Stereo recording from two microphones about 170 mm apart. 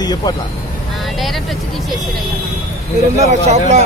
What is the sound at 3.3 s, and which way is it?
Speech, 40° right (ahead or behind).